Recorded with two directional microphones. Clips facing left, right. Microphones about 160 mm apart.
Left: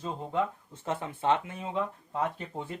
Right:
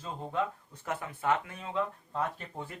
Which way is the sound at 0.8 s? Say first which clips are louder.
Left 3 dB; 25° left (ahead or behind).